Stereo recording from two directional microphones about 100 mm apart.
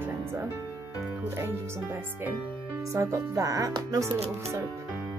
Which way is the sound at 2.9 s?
30° right (ahead or behind).